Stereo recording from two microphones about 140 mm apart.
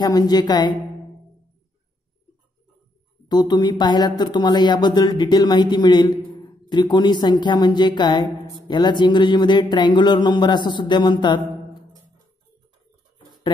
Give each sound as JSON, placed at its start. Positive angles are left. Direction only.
{"t": 0.0, "sound": "a woman's voice", "side_deg": 30}
{"t": 3.3, "sound": "speech", "side_deg": 30}